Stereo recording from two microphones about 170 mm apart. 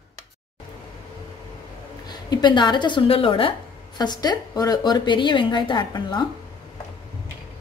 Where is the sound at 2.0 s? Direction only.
25° left (ahead or behind).